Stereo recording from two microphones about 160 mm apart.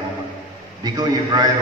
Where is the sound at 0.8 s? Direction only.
25° right (ahead or behind).